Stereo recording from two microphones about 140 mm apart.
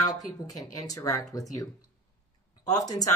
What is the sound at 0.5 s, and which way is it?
Speech, 25° left (ahead or behind).